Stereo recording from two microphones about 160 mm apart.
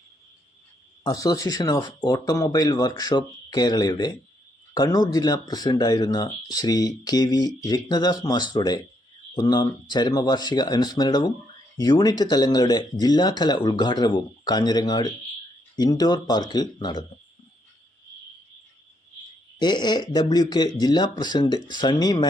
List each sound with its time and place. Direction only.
1.0 s speech: 25° left (ahead or behind)
19.5 s speech: 30° left (ahead or behind)